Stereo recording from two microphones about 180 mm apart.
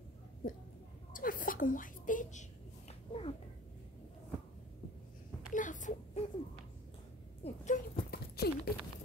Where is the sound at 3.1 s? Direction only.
30° left (ahead or behind).